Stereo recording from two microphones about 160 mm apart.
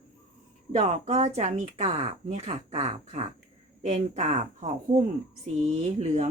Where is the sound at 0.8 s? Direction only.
45° right (ahead or behind).